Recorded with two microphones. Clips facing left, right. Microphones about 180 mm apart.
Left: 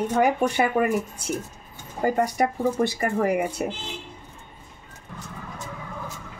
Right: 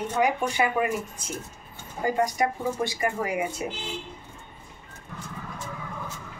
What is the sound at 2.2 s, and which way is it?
Speech, 60° left (ahead or behind).